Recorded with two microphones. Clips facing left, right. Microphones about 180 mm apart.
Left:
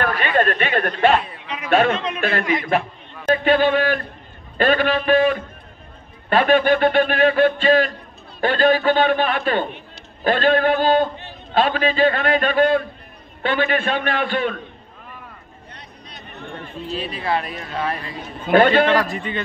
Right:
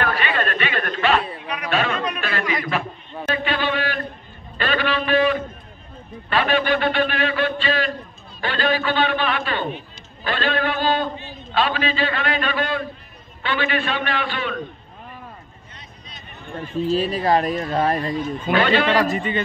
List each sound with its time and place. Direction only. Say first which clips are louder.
0.0 s a man's voice: left 4 dB; 45° left (ahead or behind)
2.0 s speech: even; 25° left (ahead or behind)
2.2 s a man's voice: left 4 dB; 50° left (ahead or behind)
3.4 s a sound: left 9 dB; 45° left (ahead or behind)
6.3 s a man's voice: left 4 dB; 50° left (ahead or behind)
16.9 s speech: right 4 dB; 40° right (ahead or behind)
18.5 s a man's voice: left 5 dB; 50° left (ahead or behind)
19.1 s speech: right 3 dB; centre (ahead or behind)